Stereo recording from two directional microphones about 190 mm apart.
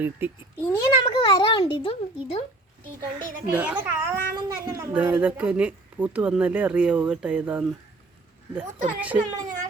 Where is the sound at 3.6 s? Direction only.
5° right (ahead or behind).